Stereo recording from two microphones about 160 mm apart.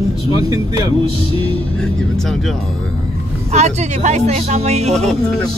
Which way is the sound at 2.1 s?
Centre (ahead or behind).